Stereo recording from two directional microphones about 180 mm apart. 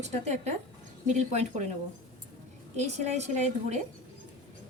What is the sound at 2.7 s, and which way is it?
A woman's voice, 40° right (ahead or behind).